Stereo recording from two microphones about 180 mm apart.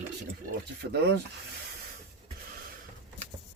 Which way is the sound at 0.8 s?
70° right (ahead or behind).